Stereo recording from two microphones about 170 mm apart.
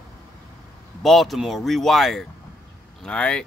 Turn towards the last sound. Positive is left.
turn(degrees=5)  # may be behind; listen again after turning